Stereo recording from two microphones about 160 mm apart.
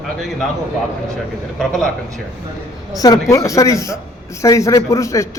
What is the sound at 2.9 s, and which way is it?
Speech, 25° left (ahead or behind).